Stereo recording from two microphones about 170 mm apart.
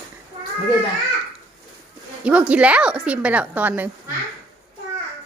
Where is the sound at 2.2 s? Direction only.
10° right (ahead or behind).